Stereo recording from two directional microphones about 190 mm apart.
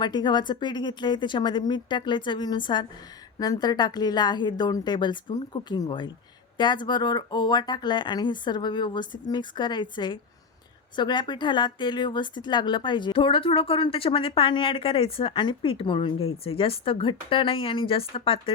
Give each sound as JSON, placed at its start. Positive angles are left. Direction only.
{"t": 0.0, "sound": "speech", "side_deg": 25}